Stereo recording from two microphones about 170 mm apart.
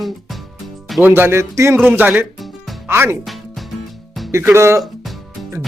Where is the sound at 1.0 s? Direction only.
15° right (ahead or behind).